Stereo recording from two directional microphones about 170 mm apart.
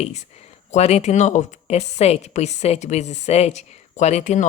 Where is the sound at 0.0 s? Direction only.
40° left (ahead or behind).